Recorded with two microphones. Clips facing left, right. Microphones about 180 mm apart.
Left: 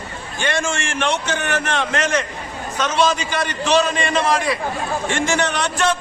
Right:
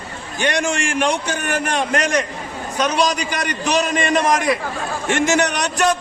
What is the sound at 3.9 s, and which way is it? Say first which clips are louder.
Speech: right 3 dB; 40° right (ahead or behind).